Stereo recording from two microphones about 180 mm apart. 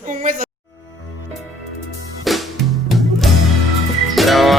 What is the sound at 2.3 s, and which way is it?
Music, centre (ahead or behind).